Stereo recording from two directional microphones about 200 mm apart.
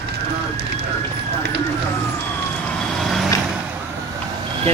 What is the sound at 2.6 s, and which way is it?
Vehicle, 5° left (ahead or behind).